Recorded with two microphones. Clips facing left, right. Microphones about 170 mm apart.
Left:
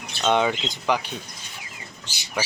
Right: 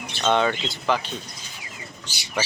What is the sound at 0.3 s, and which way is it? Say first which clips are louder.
Speech: even; 15° left (ahead or behind).